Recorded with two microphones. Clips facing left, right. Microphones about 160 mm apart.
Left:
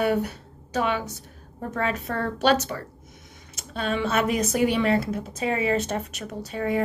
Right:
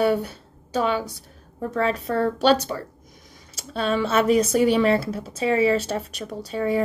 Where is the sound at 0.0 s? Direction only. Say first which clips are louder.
Right 2 dB; 30° right (ahead or behind).